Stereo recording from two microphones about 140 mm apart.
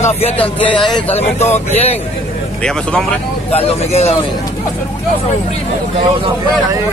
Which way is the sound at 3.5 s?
45° left (ahead or behind).